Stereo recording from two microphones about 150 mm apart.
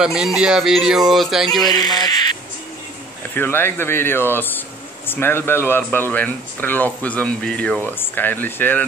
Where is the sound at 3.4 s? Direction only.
15° left (ahead or behind).